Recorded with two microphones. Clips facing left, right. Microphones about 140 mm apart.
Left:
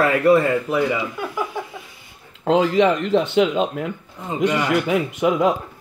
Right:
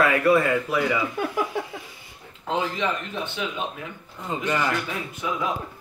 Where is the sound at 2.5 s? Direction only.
75° left (ahead or behind).